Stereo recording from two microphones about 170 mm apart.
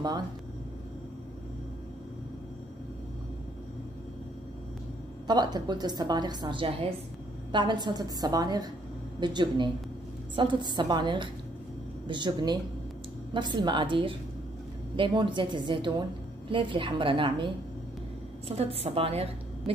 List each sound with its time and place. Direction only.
5.2 s a woman's voice: 25° right (ahead or behind)
18.5 s a woman's voice: 35° right (ahead or behind)